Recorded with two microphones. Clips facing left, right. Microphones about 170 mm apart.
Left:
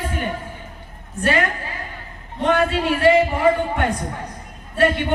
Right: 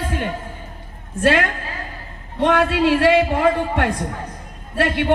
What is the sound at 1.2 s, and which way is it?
Speech, 90° right.